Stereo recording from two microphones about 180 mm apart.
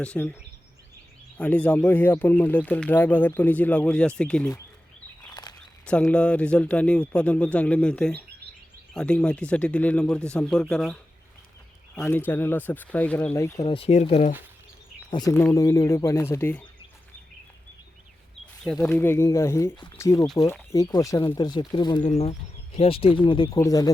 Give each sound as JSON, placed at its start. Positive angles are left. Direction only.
{"t": 0.0, "sound": "speech", "side_deg": 10}
{"t": 1.4, "sound": "a man's voice", "side_deg": 10}
{"t": 5.3, "sound": "a sound", "side_deg": 20}
{"t": 5.8, "sound": "a man's voice", "side_deg": 5}
{"t": 12.0, "sound": "speech", "side_deg": 10}
{"t": 13.7, "sound": "speech", "side_deg": 30}
{"t": 15.3, "sound": "speech", "side_deg": 15}
{"t": 18.6, "sound": "speech", "side_deg": 5}
{"t": 22.0, "sound": "speech", "side_deg": 40}